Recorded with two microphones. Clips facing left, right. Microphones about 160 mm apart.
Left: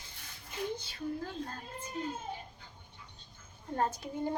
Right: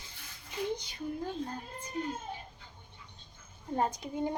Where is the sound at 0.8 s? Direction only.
15° right (ahead or behind).